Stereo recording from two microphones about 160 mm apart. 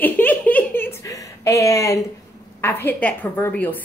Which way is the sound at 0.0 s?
10° left (ahead or behind).